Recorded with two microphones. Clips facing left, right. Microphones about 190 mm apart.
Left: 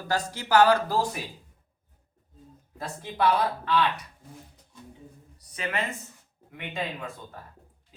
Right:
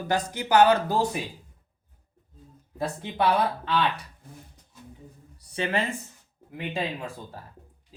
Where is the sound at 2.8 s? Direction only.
25° right (ahead or behind).